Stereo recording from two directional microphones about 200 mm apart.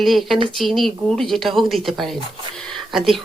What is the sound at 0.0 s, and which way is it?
Speech, centre (ahead or behind).